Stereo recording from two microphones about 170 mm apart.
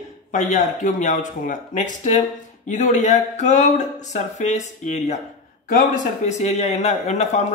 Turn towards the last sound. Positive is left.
turn(degrees=40)  # may be behind; listen again after turning